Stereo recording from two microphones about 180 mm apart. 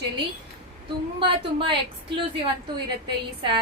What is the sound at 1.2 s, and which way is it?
A woman's voice, 30° right (ahead or behind).